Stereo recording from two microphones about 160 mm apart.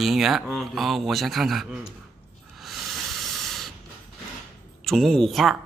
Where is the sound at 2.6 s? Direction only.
Centre (ahead or behind).